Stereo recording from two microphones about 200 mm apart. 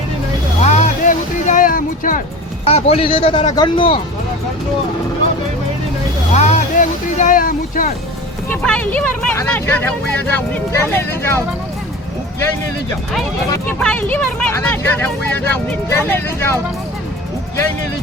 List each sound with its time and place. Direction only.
0.6 s music: 35° left (ahead or behind)
2.6 s a man's voice: 30° left (ahead or behind)
6.3 s vehicle: 35° left (ahead or behind)
8.4 s speech: 5° left (ahead or behind)
13.5 s speech: 5° left (ahead or behind)